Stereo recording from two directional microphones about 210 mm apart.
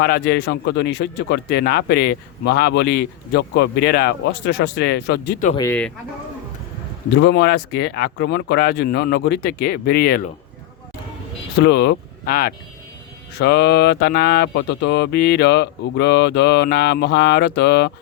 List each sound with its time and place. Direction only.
0.0 s speech: 50° left (ahead or behind)
5.5 s speech: 10° left (ahead or behind)
7.1 s speech: 55° left (ahead or behind)
11.6 s speech: 55° left (ahead or behind)